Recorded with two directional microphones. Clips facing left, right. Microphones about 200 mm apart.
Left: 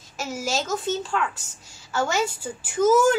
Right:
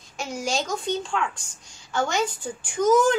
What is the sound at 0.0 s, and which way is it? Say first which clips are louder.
A woman's voice: even; 5° left (ahead or behind).